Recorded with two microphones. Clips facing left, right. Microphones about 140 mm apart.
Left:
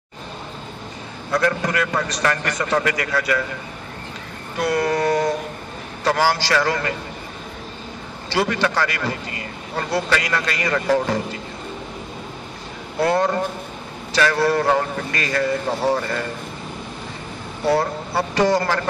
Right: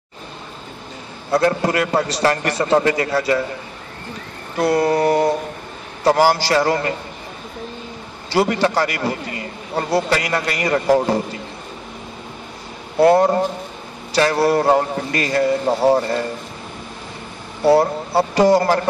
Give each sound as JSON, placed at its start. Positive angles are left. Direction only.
{"t": 1.3, "sound": "a man's voice", "side_deg": -30}
{"t": 4.6, "sound": "a man's voice", "side_deg": -30}
{"t": 8.4, "sound": "a man's voice", "side_deg": -30}
{"t": 13.0, "sound": "a man's voice", "side_deg": -30}
{"t": 17.6, "sound": "a man's voice", "side_deg": -30}